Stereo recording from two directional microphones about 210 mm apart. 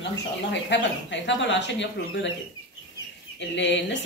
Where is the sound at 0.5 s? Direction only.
60° left (ahead or behind).